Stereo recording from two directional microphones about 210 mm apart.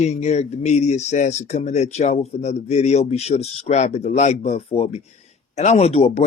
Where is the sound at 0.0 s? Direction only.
30° left (ahead or behind).